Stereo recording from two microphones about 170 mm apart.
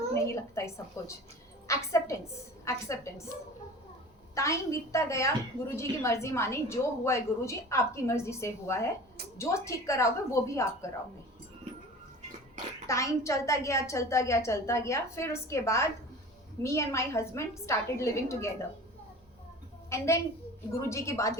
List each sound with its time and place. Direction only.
0.1 s a woman's voice: 15° left (ahead or behind)
1.6 s a sound: 15° left (ahead or behind)
2.6 s a woman's voice: 15° left (ahead or behind)
4.4 s a woman's voice: 20° left (ahead or behind)
12.9 s a woman's voice: 20° left (ahead or behind)
19.9 s a woman's voice: 15° left (ahead or behind)